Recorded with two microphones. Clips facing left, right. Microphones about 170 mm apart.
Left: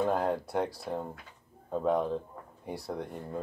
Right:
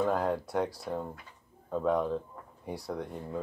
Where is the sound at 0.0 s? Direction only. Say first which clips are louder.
Even; 25° left (ahead or behind).